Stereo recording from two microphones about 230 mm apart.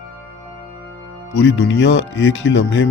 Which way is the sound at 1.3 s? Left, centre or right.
Left.